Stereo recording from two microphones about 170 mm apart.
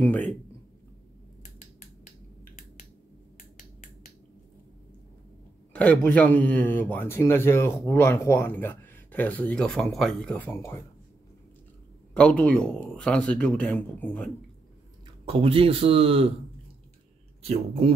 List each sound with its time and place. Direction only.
5.7 s speech: 10° left (ahead or behind)
12.1 s speech: 5° left (ahead or behind)
15.2 s speech: 35° right (ahead or behind)
17.4 s speech: 35° right (ahead or behind)